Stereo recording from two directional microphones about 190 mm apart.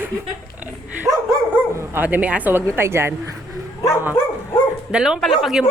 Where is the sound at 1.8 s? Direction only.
10° right (ahead or behind).